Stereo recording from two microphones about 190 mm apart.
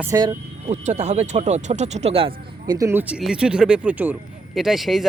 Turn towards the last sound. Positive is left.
turn(degrees=0)  # may be behind; listen again after turning